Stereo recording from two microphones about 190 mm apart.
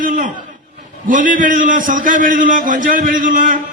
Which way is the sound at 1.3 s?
45° right (ahead or behind).